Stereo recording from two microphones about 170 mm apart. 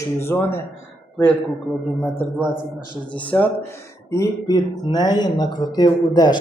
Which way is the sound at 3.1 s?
10° left (ahead or behind).